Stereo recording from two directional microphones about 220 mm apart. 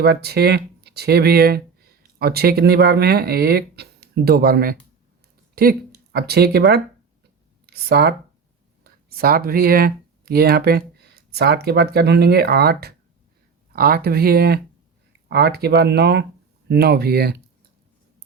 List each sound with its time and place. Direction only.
0.0 s speech: 45° right (ahead or behind)